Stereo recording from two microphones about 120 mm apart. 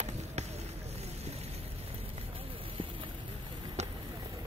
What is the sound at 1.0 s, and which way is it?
Boat, 60° right (ahead or behind).